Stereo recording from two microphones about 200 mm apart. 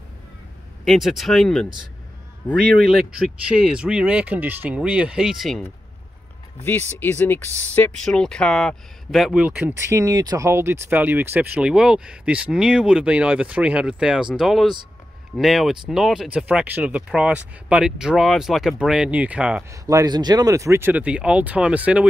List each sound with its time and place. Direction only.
0.8 s speech: centre (ahead or behind)
7.0 s speech: 10° left (ahead or behind); by 19.8 s 5° right (ahead or behind)
19.9 s speech: 20° right (ahead or behind)